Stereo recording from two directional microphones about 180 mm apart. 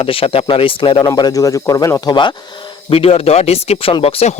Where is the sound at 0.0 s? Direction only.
30° left (ahead or behind).